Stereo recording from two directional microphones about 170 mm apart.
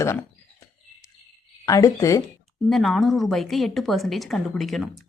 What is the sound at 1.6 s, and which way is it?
Speech, 20° left (ahead or behind).